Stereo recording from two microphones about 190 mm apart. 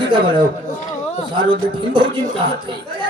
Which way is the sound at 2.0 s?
25° right (ahead or behind).